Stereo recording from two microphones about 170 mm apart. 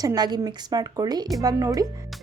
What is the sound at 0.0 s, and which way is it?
A woman's voice, 25° right (ahead or behind).